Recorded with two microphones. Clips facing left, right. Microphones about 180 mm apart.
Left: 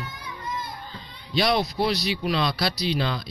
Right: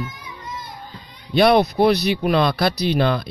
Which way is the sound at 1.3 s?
55° right (ahead or behind).